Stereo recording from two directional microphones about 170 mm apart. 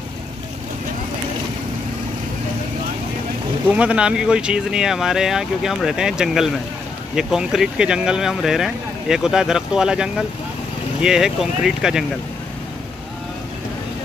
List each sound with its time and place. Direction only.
3.7 s speech: 5° right (ahead or behind)